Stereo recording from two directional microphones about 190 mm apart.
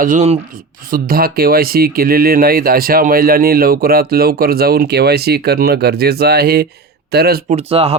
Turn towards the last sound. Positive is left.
turn(degrees=-30)  # may be behind; listen again after turning